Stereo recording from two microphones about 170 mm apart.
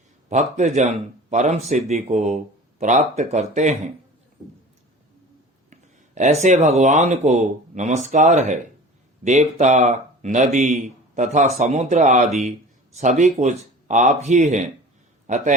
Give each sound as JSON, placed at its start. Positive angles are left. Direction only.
{"t": 0.3, "sound": "speech", "side_deg": -45}
{"t": 5.7, "sound": "a sound", "side_deg": -45}
{"t": 6.7, "sound": "speech", "side_deg": -40}